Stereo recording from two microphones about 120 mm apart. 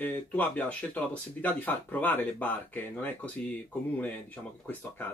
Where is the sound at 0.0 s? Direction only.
15° left (ahead or behind).